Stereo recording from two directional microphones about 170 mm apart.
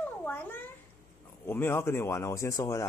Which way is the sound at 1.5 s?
15° left (ahead or behind).